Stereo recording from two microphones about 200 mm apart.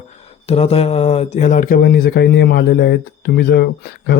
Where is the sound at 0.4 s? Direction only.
30° left (ahead or behind).